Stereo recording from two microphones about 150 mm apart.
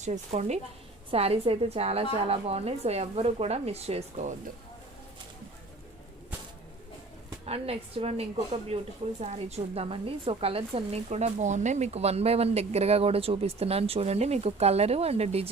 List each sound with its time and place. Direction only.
0.0 s a woman's voice: 50° right (ahead or behind)
7.4 s a woman's voice: 40° right (ahead or behind)